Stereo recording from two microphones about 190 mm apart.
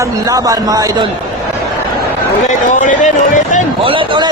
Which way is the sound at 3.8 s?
25° right (ahead or behind).